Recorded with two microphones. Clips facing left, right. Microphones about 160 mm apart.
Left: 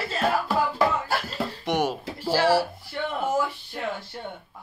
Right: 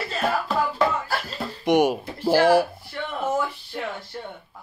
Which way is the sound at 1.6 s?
15° right (ahead or behind).